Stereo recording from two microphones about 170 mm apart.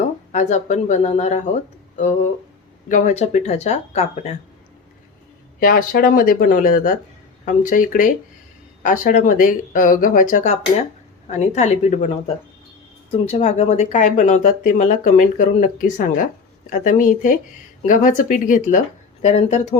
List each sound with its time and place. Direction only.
0.3 s speech: 45° left (ahead or behind)
5.5 s speech: 55° left (ahead or behind)